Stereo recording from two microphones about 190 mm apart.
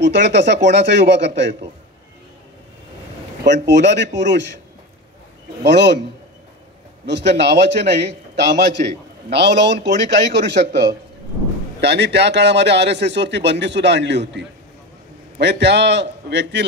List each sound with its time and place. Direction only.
0.0 s a man's voice: 65° right (ahead or behind)
3.4 s speech: 65° right (ahead or behind)
5.6 s a man's voice: 65° right (ahead or behind)
7.1 s a man's voice: 65° right (ahead or behind)